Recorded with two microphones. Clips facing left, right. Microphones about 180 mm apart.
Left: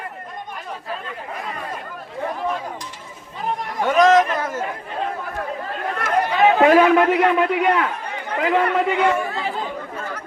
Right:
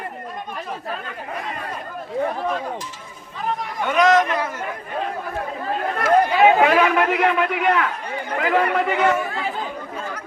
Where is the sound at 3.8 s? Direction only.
35° left (ahead or behind).